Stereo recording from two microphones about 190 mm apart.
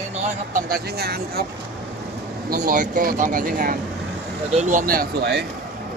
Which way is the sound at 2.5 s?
45° right (ahead or behind).